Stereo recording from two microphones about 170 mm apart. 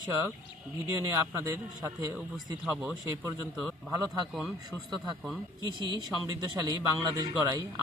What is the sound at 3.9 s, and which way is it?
Speech, 20° right (ahead or behind).